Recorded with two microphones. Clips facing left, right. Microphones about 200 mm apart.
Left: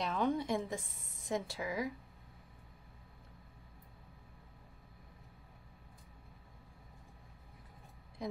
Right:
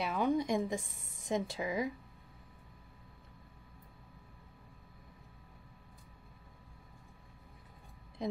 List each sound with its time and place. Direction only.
0.0 s a woman's voice: 10° right (ahead or behind)